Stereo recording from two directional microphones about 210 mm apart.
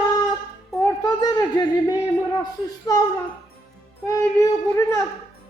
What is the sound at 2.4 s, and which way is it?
Music, 15° left (ahead or behind).